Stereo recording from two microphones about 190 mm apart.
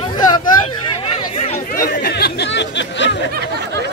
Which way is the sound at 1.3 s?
35° left (ahead or behind).